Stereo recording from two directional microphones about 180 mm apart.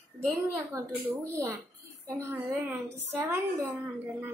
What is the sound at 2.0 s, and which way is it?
A woman's voice, 15° right (ahead or behind).